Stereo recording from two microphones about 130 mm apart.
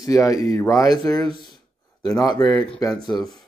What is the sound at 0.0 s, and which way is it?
Speech, 25° left (ahead or behind).